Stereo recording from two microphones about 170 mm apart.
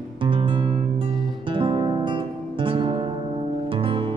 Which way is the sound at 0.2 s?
30° right (ahead or behind).